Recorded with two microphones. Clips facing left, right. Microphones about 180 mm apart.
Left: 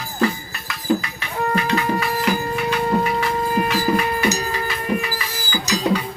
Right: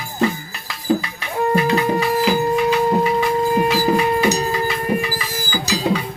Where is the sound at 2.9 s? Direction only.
25° right (ahead or behind).